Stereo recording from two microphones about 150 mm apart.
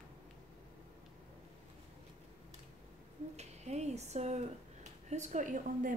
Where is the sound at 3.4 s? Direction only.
45° right (ahead or behind).